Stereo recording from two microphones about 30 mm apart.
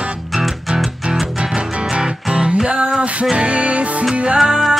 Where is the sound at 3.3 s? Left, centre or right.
Right.